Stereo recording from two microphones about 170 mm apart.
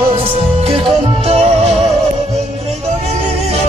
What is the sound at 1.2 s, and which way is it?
Music, 35° right (ahead or behind).